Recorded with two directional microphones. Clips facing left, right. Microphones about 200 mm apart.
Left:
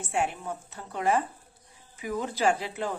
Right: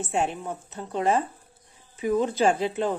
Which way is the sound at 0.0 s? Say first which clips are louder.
Right 3 dB; 25° right (ahead or behind).